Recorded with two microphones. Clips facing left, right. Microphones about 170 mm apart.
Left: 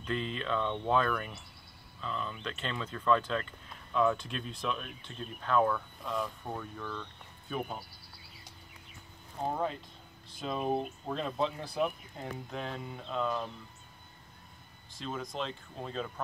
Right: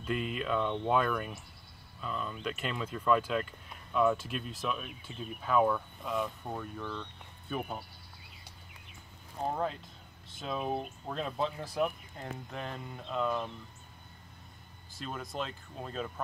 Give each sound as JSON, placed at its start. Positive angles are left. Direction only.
{"t": 0.0, "sound": "speech", "side_deg": -10}
{"t": 9.5, "sound": "speech", "side_deg": 0}
{"t": 14.9, "sound": "speech", "side_deg": -5}